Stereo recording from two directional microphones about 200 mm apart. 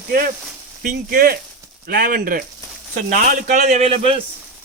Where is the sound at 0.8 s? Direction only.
45° right (ahead or behind).